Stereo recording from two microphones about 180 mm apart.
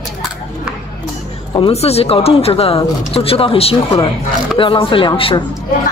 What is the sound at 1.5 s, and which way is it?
Speech, 30° left (ahead or behind).